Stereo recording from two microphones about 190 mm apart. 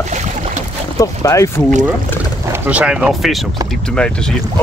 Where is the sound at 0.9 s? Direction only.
15° left (ahead or behind).